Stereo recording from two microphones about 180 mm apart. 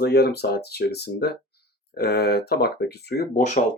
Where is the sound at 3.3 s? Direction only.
45° left (ahead or behind).